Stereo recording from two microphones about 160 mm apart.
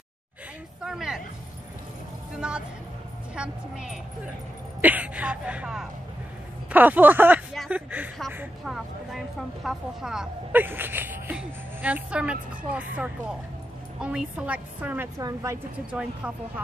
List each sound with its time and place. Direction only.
0.8 s music: 5° right (ahead or behind)
2.3 s a woman's voice: 5° right (ahead or behind)
15.1 s a woman's voice: 20° right (ahead or behind)